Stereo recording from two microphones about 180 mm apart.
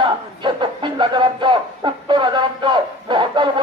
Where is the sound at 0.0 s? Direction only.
25° right (ahead or behind).